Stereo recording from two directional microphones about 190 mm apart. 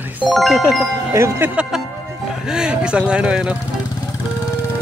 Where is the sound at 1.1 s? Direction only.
15° right (ahead or behind).